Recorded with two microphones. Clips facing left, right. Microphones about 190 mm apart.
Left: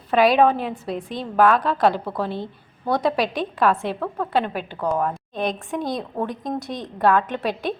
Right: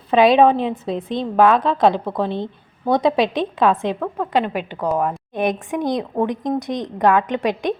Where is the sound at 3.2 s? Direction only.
Centre (ahead or behind).